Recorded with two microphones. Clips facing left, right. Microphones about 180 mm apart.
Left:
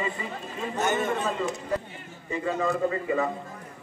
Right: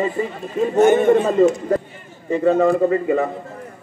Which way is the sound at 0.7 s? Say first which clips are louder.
Right 14 dB; 55° right (ahead or behind).